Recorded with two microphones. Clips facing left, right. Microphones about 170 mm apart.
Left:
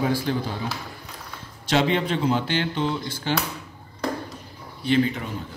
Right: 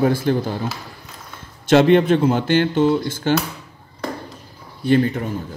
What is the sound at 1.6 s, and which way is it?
Speech, 50° right (ahead or behind).